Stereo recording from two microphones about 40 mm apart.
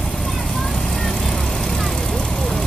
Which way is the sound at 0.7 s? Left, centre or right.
Centre.